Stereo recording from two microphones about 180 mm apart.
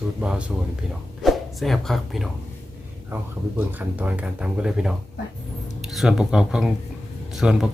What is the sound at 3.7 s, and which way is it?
Speech, 10° right (ahead or behind).